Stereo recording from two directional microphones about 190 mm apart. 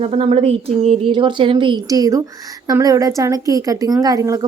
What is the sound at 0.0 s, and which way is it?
A woman's voice, 30° right (ahead or behind).